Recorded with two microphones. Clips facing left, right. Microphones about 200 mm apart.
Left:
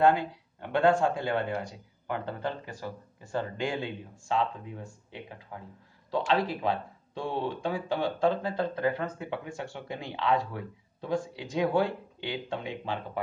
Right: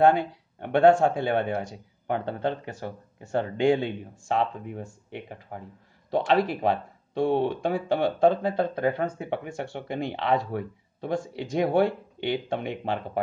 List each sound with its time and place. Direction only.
0.0 s speech: 60° right (ahead or behind)